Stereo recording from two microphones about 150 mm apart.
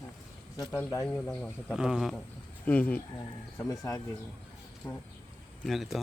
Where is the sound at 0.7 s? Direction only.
15° left (ahead or behind).